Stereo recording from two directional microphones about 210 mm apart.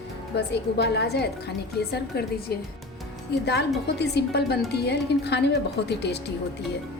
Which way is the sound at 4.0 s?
50° left (ahead or behind).